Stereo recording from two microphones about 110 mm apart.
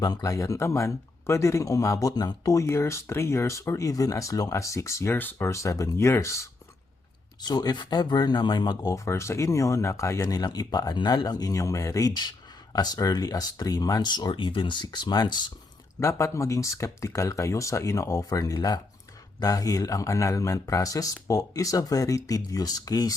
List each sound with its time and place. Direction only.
0.0 s speech: 35° left (ahead or behind)
7.4 s speech: 40° left (ahead or behind)
16.0 s speech: 25° left (ahead or behind)